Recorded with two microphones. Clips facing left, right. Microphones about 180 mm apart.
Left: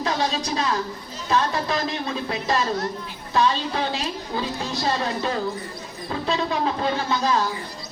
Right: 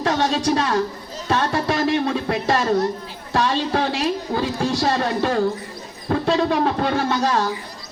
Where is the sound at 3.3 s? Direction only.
75° right (ahead or behind).